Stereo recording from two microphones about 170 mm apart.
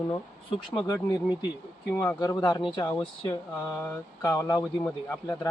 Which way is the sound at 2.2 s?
25° left (ahead or behind).